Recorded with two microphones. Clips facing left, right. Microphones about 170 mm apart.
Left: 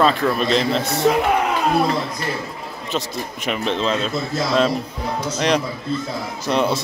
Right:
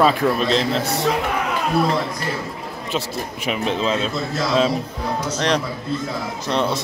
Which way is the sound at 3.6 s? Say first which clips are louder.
Even; 5° right (ahead or behind).